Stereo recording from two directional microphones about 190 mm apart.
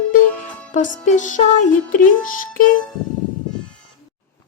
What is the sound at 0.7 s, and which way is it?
Speech, 40° left (ahead or behind).